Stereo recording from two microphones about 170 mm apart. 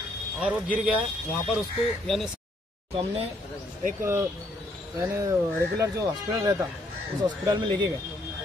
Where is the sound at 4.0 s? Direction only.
15° right (ahead or behind).